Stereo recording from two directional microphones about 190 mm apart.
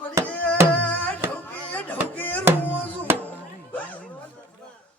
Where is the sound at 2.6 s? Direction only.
10° left (ahead or behind).